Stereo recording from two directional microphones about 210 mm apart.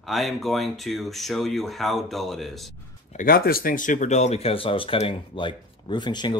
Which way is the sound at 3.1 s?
45° left (ahead or behind).